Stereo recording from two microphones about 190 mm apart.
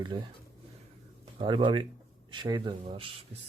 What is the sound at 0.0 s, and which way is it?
Speech, 25° right (ahead or behind).